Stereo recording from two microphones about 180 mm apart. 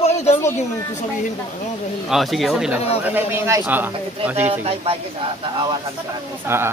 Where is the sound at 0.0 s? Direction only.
35° left (ahead or behind).